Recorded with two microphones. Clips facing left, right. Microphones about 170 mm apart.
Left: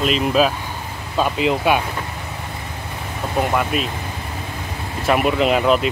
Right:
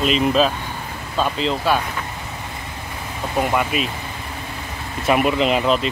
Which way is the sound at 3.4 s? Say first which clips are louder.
Even; centre (ahead or behind).